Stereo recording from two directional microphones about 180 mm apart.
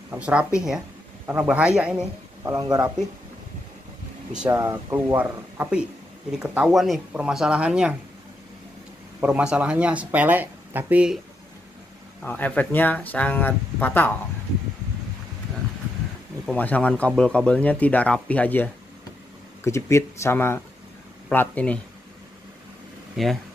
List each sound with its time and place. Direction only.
0.1 s speech: 5° right (ahead or behind)
2.4 s a man's voice: 20° right (ahead or behind)
4.5 s speech: 15° right (ahead or behind)
9.2 s speech: 5° right (ahead or behind)
12.2 s speech: 10° left (ahead or behind)
16.5 s speech: 10° left (ahead or behind)
23.1 s speech: centre (ahead or behind)